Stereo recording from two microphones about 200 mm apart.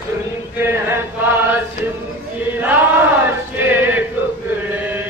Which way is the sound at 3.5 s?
10° right (ahead or behind).